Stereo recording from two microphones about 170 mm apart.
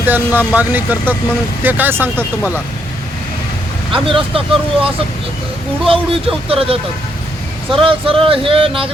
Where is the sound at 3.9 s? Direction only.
30° right (ahead or behind).